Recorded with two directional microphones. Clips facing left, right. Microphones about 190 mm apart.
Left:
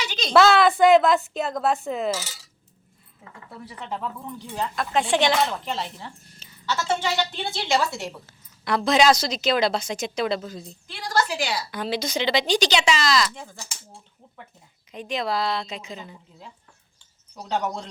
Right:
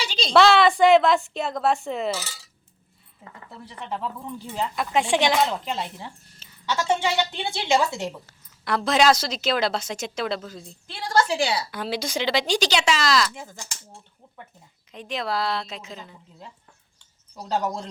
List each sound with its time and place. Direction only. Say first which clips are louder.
0.3 s speech: even; centre (ahead or behind)
4.5 s speech: right 1 dB; 10° right (ahead or behind)
8.6 s speech: left 1 dB; 5° right (ahead or behind)
11.1 s a woman's voice: right 3 dB; 25° right (ahead or behind)
11.7 s speech: left 1 dB; 10° right (ahead or behind)
14.9 s speech: left 1 dB; centre (ahead or behind)
17.4 s speech: right 1 dB; centre (ahead or behind)